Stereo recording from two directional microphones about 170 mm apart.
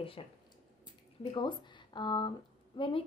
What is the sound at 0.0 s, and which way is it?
A woman's voice, 30° left (ahead or behind).